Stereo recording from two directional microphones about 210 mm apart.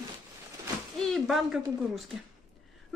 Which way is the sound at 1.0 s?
Centre (ahead or behind).